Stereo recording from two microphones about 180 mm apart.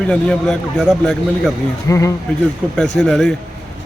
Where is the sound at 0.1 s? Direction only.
5° left (ahead or behind).